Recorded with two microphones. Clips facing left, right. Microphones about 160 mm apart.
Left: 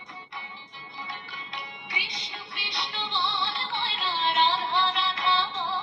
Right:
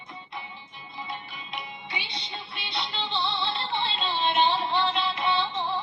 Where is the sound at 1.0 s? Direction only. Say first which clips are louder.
Right 3 dB; 25° right (ahead or behind).